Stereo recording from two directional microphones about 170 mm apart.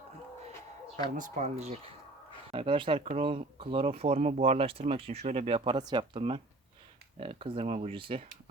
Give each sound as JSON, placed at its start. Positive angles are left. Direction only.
{"t": 1.1, "sound": "speech", "side_deg": -45}